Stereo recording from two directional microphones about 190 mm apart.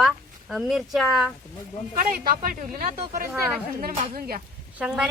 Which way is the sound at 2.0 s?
50° right (ahead or behind).